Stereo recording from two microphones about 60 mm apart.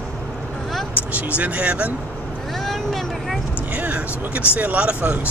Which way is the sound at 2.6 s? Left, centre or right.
Centre.